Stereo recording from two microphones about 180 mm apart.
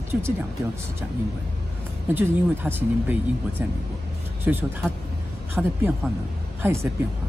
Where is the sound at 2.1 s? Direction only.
10° right (ahead or behind).